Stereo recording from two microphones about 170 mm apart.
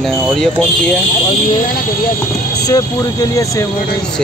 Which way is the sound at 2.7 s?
20° left (ahead or behind).